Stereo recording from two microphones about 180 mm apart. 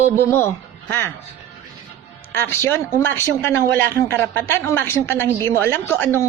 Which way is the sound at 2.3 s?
10° left (ahead or behind).